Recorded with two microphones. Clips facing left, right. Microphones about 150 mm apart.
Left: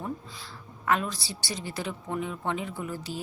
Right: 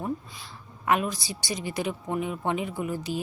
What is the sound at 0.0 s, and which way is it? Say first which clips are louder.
A woman's voice: right 4 dB; 15° right (ahead or behind).